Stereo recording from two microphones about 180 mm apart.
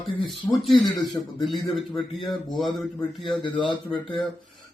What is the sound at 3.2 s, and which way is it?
Speech, 25° left (ahead or behind).